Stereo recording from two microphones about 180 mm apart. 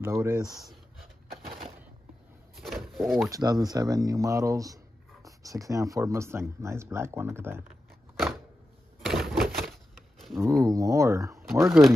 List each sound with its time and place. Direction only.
0.0 s speech: 15° right (ahead or behind)
0.5 s speech: centre (ahead or behind)
2.5 s pigeon: centre (ahead or behind)
3.3 s speech: 20° right (ahead or behind)
9.0 s a sound: centre (ahead or behind)
10.4 s speech: 20° right (ahead or behind)